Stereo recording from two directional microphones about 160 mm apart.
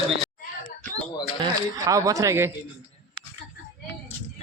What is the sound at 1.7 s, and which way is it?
Speech, 20° right (ahead or behind).